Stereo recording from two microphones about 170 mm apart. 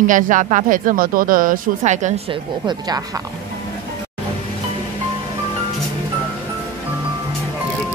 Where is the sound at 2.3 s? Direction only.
25° right (ahead or behind).